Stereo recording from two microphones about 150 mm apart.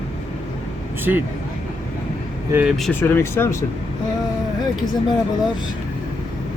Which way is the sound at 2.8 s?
15° left (ahead or behind).